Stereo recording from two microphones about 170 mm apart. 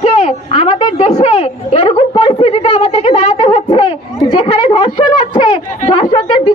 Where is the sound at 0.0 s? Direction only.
40° left (ahead or behind).